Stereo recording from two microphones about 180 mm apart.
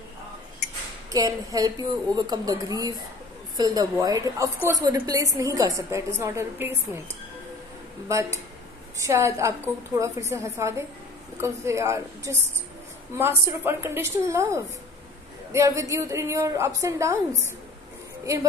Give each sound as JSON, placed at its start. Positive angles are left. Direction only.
{"t": 1.1, "sound": "a woman's voice", "side_deg": -20}